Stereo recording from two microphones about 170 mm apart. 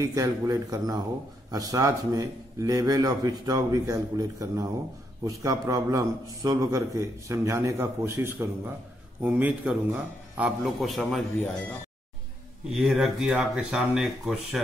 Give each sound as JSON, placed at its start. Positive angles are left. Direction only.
{"t": 0.0, "sound": "a man's voice", "side_deg": -20}
{"t": 12.6, "sound": "a man's voice", "side_deg": 0}